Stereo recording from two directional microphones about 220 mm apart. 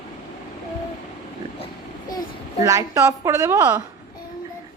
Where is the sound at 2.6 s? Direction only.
15° right (ahead or behind).